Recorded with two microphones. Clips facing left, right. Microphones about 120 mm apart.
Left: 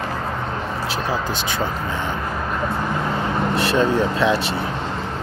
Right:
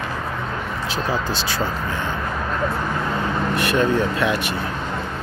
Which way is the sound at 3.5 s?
25° left (ahead or behind).